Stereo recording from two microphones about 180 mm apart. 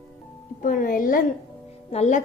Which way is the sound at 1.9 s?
35° left (ahead or behind).